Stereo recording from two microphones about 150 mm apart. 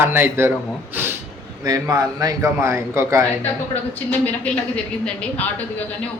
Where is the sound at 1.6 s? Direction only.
25° right (ahead or behind).